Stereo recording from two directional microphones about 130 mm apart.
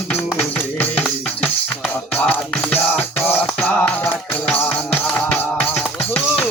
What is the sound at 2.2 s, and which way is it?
Music, 10° left (ahead or behind).